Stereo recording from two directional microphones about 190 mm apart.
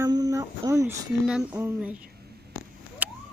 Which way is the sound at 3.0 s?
10° right (ahead or behind).